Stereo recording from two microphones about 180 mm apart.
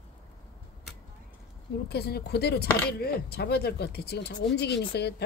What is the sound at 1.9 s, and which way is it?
Speech, 60° left (ahead or behind).